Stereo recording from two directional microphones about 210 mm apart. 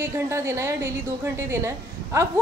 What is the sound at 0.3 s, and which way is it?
Speech, 15° right (ahead or behind).